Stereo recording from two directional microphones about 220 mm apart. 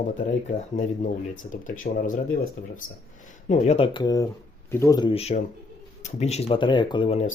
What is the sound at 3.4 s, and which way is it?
Speech, 30° left (ahead or behind).